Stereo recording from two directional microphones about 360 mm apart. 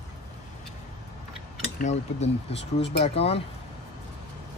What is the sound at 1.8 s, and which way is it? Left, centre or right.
Speech, centre.